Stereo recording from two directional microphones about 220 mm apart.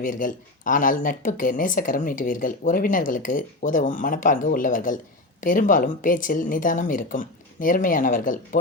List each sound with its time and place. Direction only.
0.0 s speech: 35° left (ahead or behind)